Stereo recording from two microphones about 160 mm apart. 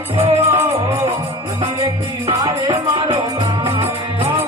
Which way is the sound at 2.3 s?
30° right (ahead or behind).